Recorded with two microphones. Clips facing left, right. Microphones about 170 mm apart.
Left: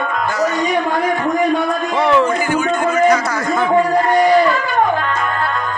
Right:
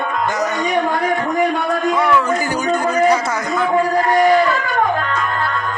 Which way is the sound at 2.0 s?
25° left (ahead or behind).